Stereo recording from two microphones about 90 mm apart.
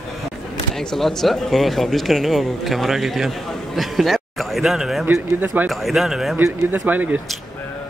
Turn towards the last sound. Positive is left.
turn(degrees=-20)  # may be behind; listen again after turning